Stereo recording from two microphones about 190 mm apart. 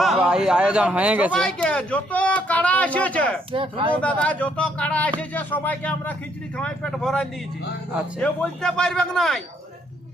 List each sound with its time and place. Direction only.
0.0 s a man's voice: centre (ahead or behind)
1.3 s speech: 5° left (ahead or behind)
3.5 s speech: 25° right (ahead or behind)
3.9 s a man's voice: 5° left (ahead or behind)